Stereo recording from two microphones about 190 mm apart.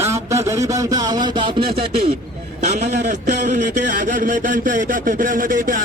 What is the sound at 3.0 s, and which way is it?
Speech, 40° right (ahead or behind).